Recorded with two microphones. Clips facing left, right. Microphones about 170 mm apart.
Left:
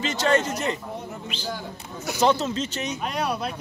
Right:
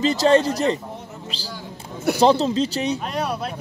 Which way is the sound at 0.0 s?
35° right (ahead or behind).